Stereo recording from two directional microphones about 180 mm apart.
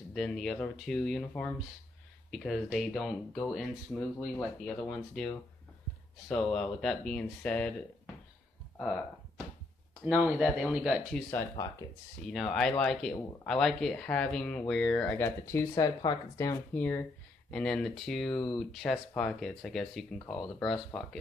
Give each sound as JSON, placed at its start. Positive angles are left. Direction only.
{"t": 0.1, "sound": "speech", "side_deg": 5}
{"t": 8.7, "sound": "speech", "side_deg": 5}
{"t": 10.1, "sound": "speech", "side_deg": -5}
{"t": 11.2, "sound": "speech", "side_deg": 15}
{"t": 12.3, "sound": "speech", "side_deg": 0}
{"t": 16.7, "sound": "speech", "side_deg": 10}